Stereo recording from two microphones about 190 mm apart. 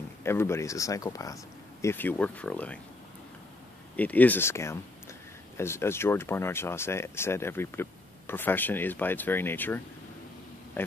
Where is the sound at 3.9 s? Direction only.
10° left (ahead or behind).